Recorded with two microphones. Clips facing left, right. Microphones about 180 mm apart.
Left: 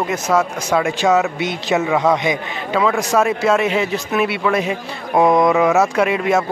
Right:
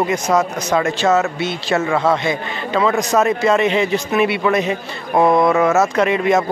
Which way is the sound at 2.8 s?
5° left (ahead or behind).